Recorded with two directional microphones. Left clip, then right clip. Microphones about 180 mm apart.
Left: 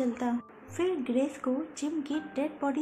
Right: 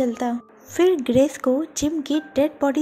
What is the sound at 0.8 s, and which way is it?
Speech, 40° right (ahead or behind).